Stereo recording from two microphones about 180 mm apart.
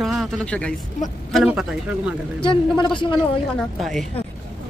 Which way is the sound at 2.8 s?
25° left (ahead or behind).